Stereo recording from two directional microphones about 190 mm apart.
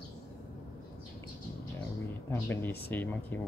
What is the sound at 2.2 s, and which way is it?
Speech, 10° left (ahead or behind).